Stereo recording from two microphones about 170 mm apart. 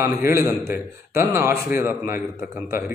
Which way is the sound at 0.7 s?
15° right (ahead or behind).